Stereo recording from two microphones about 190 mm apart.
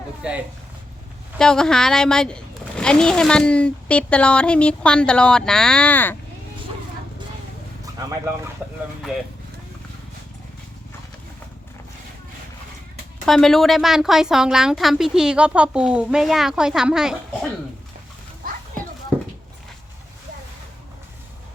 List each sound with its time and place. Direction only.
0.2 s speech: 5° right (ahead or behind); by 6.1 s 10° left (ahead or behind)
7.9 s speech: 20° right (ahead or behind)
9.0 s speech: centre (ahead or behind)
13.2 s speech: centre (ahead or behind)